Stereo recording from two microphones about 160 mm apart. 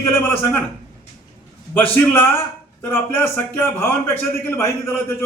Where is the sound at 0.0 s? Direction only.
15° left (ahead or behind).